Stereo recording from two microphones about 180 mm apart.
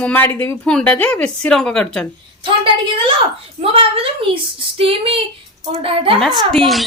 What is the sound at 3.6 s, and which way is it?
A woman's voice, 30° right (ahead or behind).